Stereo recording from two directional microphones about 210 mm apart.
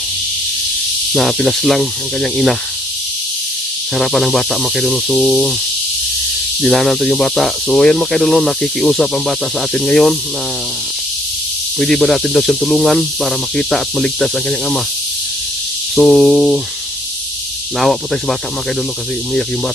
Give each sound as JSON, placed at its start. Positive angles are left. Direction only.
{"t": 1.1, "sound": "speech", "side_deg": 0}
{"t": 3.9, "sound": "speech", "side_deg": 0}
{"t": 6.6, "sound": "speech", "side_deg": 0}
{"t": 11.8, "sound": "speech", "side_deg": 0}
{"t": 16.0, "sound": "speech", "side_deg": 0}
{"t": 17.7, "sound": "speech", "side_deg": 0}